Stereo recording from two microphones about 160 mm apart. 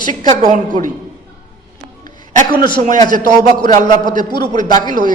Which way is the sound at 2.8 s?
45° right (ahead or behind).